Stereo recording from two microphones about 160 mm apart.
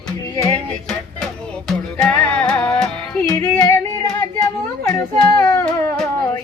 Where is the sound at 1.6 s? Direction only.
5° left (ahead or behind).